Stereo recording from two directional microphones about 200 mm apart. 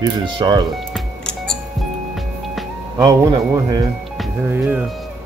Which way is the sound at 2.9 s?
15° right (ahead or behind).